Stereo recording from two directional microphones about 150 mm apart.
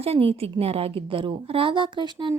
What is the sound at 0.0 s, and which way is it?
Speech, 40° right (ahead or behind).